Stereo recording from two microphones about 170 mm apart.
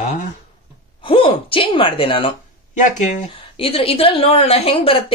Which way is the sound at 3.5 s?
35° left (ahead or behind).